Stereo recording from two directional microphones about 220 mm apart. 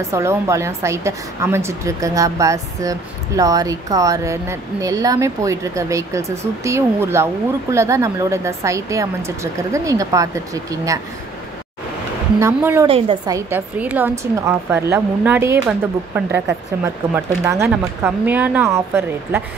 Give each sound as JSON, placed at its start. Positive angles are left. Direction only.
{"t": 0.0, "sound": "a woman's voice", "side_deg": -10}
{"t": 12.4, "sound": "a woman's voice", "side_deg": -10}
{"t": 12.8, "sound": "a woman's voice", "side_deg": -25}
{"t": 13.5, "sound": "a woman's voice", "side_deg": -5}